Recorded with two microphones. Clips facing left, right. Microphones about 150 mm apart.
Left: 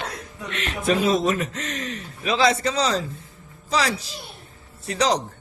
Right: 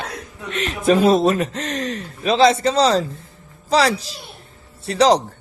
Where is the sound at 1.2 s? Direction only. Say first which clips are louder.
Right 5 dB; 35° right (ahead or behind).